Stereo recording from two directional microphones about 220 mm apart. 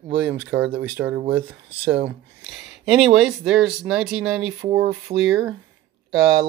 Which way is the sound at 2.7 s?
Centre (ahead or behind).